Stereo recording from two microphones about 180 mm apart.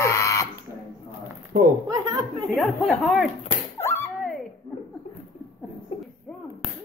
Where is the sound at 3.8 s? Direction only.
15° left (ahead or behind).